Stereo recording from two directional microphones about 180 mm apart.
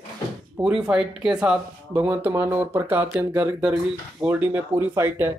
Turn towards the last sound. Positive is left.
turn(degrees=-15)  # may be behind; listen again after turning